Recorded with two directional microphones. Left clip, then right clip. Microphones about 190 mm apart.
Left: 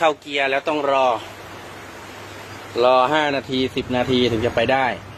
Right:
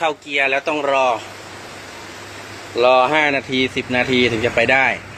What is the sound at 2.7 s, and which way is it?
Speech, centre (ahead or behind).